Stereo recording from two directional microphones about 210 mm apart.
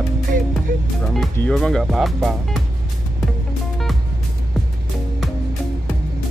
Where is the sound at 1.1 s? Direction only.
Centre (ahead or behind).